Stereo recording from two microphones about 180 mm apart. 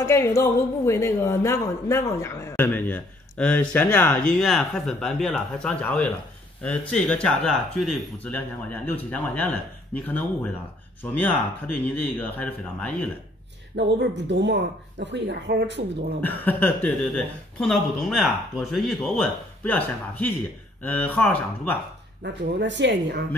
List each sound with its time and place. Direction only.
0.0 s speech: 15° left (ahead or behind)
13.7 s speech: 75° right (ahead or behind)
16.2 s speech: 10° left (ahead or behind)
22.2 s speech: 75° right (ahead or behind)